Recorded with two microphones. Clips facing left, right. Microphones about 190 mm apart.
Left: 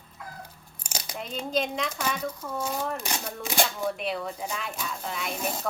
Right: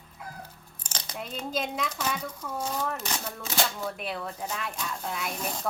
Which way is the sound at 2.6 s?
10° left (ahead or behind).